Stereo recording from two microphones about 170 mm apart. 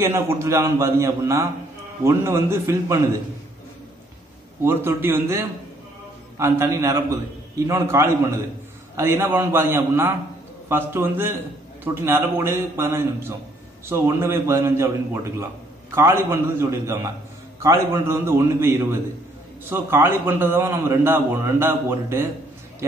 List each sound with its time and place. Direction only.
0.0 s a man's voice: 15° right (ahead or behind)
4.6 s a man's voice: 15° right (ahead or behind)
15.9 s a man's voice: 15° right (ahead or behind)